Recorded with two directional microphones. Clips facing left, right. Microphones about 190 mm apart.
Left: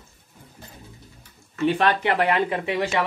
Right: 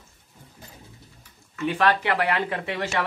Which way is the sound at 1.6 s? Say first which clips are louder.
Left 2 dB; 25° left (ahead or behind).